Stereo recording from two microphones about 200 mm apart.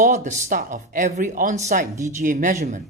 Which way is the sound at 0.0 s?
35° right (ahead or behind).